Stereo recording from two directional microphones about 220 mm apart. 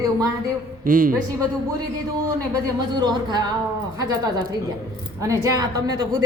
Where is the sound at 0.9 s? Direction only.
40° right (ahead or behind).